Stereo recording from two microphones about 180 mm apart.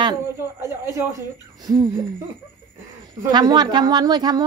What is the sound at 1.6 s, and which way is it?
Speech, 20° right (ahead or behind).